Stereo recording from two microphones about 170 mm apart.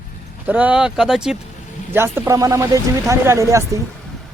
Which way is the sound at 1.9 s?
15° right (ahead or behind).